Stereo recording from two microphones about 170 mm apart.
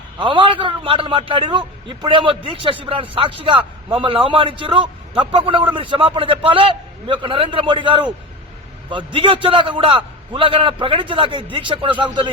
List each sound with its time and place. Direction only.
0.2 s a man's voice: 30° right (ahead or behind)